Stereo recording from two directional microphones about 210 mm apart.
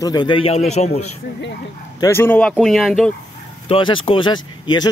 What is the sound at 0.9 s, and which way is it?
Speech, 90° left.